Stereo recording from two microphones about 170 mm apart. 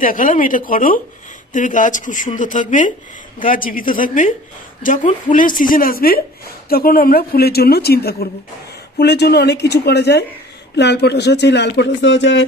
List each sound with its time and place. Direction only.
0.0 s speech: 50° left (ahead or behind); by 8.3 s 65° left (ahead or behind)
8.9 s speech: 80° left